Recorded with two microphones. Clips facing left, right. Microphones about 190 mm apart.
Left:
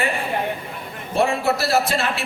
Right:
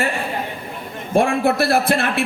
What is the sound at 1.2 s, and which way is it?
A man's voice, 55° right (ahead or behind).